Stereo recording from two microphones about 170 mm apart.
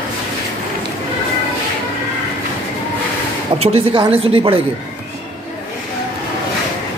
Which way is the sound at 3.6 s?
35° right (ahead or behind).